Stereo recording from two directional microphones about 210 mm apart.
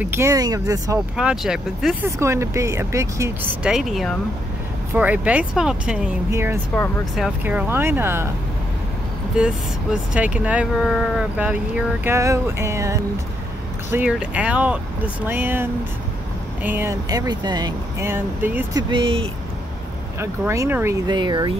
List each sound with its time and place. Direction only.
0.0 s speech: 10° right (ahead or behind)
1.1 s speech: 5° right (ahead or behind)
2.0 s speech: 15° right (ahead or behind)
6.7 s speech: 10° left (ahead or behind)
7.2 s speech: 5° right (ahead or behind)
9.4 s speech: 5° right (ahead or behind); by 19.2 s 25° right (ahead or behind)
20.2 s speech: 15° right (ahead or behind)